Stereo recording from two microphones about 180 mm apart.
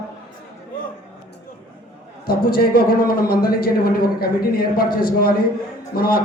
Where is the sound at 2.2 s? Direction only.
55° left (ahead or behind).